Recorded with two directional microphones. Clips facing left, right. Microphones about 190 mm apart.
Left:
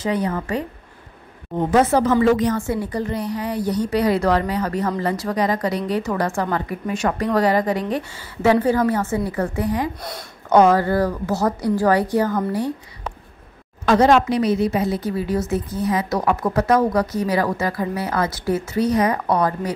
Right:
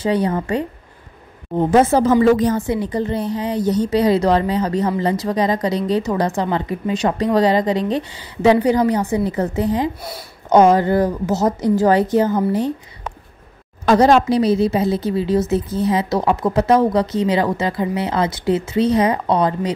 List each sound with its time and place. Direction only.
0.0 s a woman's voice: 30° right (ahead or behind)
1.7 s a woman's voice: 25° right (ahead or behind)
2.6 s a woman's voice: 20° right (ahead or behind)
13.8 s a woman's voice: 35° right (ahead or behind)